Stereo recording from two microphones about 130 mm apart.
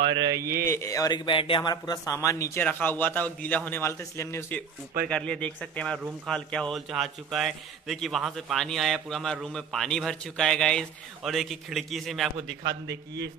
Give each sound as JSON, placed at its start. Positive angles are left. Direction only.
{"t": 0.0, "sound": "speech", "side_deg": -35}
{"t": 0.7, "sound": "a man's voice", "side_deg": 20}